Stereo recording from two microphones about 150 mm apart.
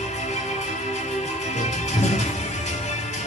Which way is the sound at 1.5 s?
50° left (ahead or behind).